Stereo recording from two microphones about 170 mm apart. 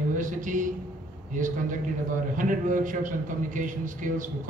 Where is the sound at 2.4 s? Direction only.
50° right (ahead or behind).